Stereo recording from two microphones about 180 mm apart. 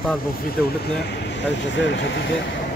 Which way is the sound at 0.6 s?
70° left (ahead or behind).